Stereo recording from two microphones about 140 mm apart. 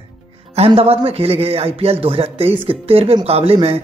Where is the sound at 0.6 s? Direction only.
45° right (ahead or behind).